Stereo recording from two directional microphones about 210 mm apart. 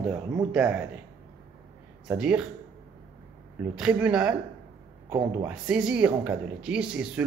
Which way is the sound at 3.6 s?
5° right (ahead or behind).